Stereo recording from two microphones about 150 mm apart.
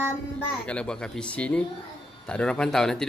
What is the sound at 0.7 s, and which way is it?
A man's voice, 5° left (ahead or behind).